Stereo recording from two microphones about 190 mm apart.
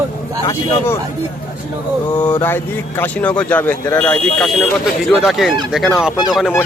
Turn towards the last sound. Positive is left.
turn(degrees=0)  # may be behind; listen again after turning